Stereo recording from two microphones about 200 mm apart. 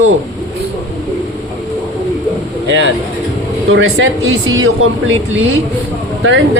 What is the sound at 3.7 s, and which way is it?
Speech, 85° right.